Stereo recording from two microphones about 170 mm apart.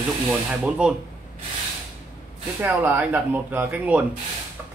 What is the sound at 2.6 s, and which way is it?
Speech, 10° right (ahead or behind).